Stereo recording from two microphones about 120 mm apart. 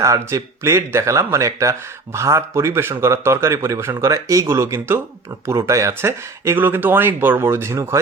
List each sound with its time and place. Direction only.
0.0 s speech: 25° right (ahead or behind)